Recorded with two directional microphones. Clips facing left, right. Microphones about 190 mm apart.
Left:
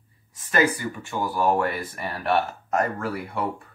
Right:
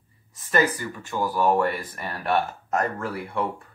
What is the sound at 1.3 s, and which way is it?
Speech, centre (ahead or behind).